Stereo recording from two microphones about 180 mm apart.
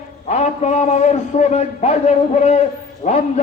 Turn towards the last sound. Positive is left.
turn(degrees=40)  # may be behind; listen again after turning